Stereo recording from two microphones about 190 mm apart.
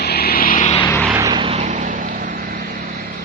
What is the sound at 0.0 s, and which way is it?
Vehicle, 55° left (ahead or behind).